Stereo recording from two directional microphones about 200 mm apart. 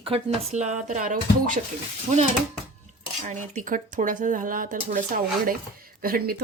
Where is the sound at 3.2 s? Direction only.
40° right (ahead or behind).